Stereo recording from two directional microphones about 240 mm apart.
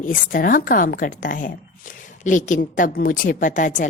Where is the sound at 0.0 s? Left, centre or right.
Left.